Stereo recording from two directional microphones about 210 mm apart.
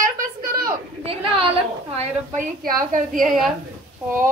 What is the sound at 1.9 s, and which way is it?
A woman's voice, 40° right (ahead or behind).